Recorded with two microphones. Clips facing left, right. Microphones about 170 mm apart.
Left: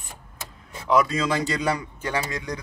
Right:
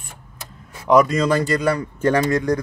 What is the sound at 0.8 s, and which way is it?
Speech, 55° right (ahead or behind).